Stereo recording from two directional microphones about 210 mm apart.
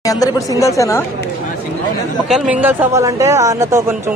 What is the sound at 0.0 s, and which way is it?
A woman's voice, 15° left (ahead or behind).